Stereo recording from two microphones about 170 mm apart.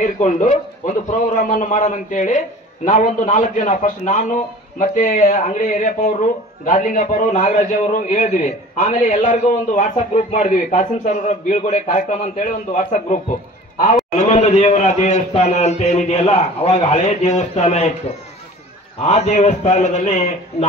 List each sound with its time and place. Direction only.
0.0 s a man's voice: 50° left (ahead or behind)